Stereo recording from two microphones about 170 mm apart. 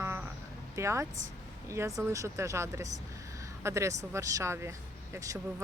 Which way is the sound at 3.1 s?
20° right (ahead or behind).